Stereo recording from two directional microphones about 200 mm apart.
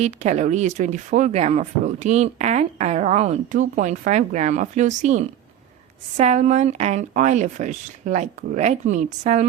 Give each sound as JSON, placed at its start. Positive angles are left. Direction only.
{"t": 0.0, "sound": "speech", "side_deg": -35}